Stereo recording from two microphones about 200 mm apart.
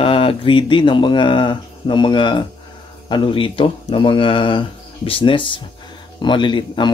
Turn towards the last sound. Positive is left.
turn(degrees=25)  # may be behind; listen again after turning